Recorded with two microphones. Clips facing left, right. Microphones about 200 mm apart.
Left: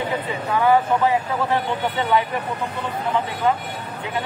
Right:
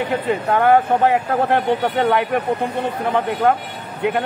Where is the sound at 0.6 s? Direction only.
60° right (ahead or behind).